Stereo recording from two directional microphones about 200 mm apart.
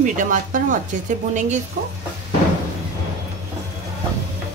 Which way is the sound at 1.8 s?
40° right (ahead or behind).